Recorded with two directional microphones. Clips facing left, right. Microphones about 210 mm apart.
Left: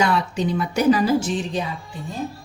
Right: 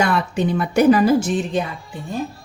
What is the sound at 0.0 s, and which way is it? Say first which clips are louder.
A woman's voice: right 2 dB; 55° right (ahead or behind).